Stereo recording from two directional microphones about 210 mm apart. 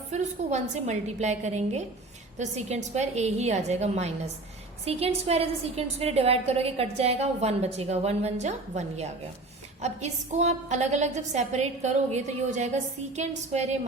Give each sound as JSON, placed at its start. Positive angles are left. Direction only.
{"t": 0.1, "sound": "a woman's voice", "side_deg": -35}